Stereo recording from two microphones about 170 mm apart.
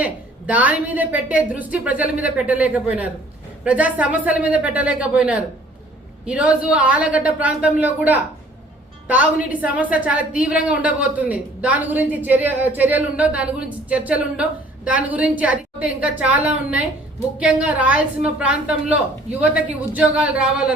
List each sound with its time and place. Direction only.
0.0 s a woman's voice: 10° right (ahead or behind)